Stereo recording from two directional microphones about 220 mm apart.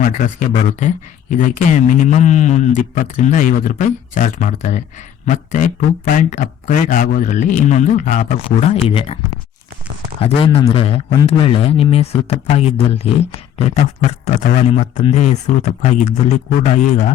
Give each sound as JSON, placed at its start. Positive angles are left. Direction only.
{"t": 0.0, "sound": "speech", "side_deg": 40}
{"t": 10.2, "sound": "a man's voice", "side_deg": 25}